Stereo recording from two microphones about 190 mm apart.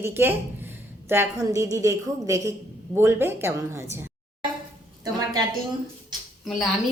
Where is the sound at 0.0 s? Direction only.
10° right (ahead or behind).